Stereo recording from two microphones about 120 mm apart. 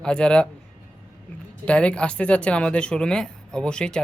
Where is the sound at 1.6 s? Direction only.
10° left (ahead or behind).